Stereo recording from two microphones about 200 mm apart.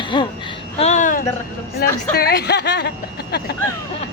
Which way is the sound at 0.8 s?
35° left (ahead or behind).